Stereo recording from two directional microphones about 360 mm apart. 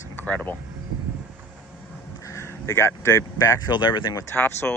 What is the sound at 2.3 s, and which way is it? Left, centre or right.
Speech, centre.